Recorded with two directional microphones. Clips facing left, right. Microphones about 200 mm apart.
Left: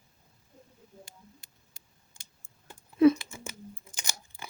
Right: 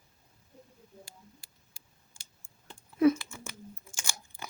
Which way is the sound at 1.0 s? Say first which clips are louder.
Left 1 dB; 20° left (ahead or behind).